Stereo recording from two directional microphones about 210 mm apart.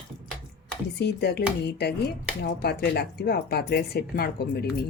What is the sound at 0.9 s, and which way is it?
Speech, 50° left (ahead or behind).